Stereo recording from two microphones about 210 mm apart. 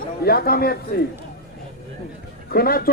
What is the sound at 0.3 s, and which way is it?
Speech, 45° left (ahead or behind).